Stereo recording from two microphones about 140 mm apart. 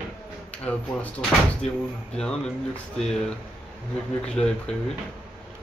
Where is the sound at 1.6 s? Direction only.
55° left (ahead or behind).